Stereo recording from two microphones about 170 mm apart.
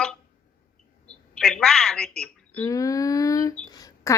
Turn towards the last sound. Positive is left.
turn(degrees=20)  # may be behind; listen again after turning